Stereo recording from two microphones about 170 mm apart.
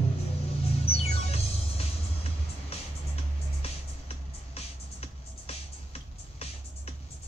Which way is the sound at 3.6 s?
35° left (ahead or behind).